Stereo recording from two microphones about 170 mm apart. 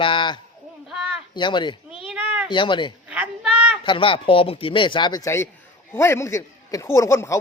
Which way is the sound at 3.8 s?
30° left (ahead or behind).